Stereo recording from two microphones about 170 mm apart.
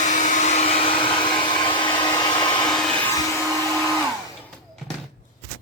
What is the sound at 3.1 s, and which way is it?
Vacuum cleaner, 20° left (ahead or behind).